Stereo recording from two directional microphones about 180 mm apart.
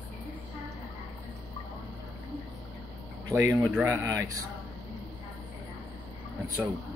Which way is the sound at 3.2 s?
15° right (ahead or behind).